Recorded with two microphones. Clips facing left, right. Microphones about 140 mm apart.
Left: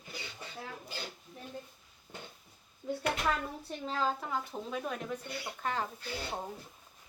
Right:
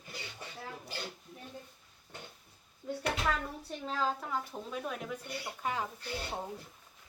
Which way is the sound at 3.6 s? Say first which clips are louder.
Left 1 dB; 5° right (ahead or behind).